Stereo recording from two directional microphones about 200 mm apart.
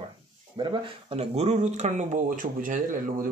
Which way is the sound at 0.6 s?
25° right (ahead or behind).